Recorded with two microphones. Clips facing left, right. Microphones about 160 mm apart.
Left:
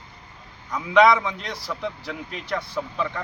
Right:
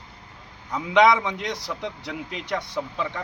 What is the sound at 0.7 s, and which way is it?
A man's voice, 20° right (ahead or behind).